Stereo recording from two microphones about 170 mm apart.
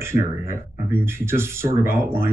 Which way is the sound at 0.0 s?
15° right (ahead or behind).